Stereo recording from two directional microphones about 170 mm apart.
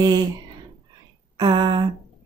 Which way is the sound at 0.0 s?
25° right (ahead or behind).